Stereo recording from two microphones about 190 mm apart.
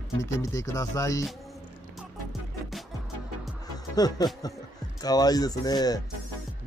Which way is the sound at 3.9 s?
20° left (ahead or behind).